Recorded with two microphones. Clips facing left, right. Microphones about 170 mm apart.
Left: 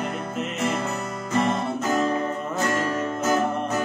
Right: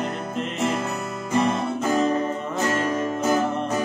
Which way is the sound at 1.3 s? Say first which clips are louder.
Right 1 dB; 15° right (ahead or behind).